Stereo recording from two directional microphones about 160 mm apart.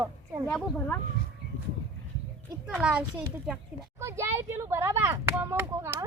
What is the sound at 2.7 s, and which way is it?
Speech, 5° right (ahead or behind).